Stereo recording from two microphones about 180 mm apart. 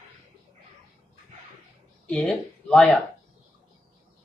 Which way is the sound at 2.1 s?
5° left (ahead or behind).